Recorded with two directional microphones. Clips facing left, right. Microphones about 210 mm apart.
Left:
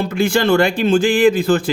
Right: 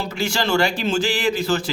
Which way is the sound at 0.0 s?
55° left (ahead or behind).